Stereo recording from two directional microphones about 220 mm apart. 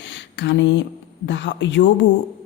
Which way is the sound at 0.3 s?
50° left (ahead or behind).